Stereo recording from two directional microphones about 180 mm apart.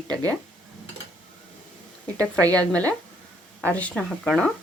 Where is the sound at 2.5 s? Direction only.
5° left (ahead or behind).